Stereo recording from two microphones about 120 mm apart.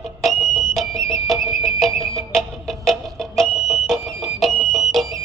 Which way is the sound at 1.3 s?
Centre (ahead or behind).